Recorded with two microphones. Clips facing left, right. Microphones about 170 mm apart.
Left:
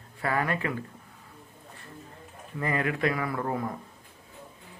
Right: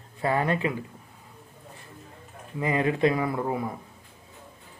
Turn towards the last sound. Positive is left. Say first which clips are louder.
# right 2 dB
turn(degrees=-10)  # may be behind; listen again after turning